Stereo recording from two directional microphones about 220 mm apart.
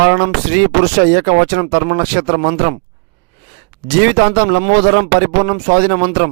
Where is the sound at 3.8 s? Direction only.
45° right (ahead or behind).